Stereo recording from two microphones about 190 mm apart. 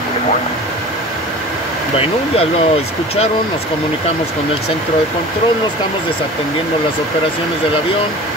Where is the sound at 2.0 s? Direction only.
30° left (ahead or behind).